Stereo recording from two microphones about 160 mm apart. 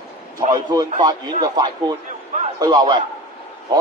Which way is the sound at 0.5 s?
25° right (ahead or behind).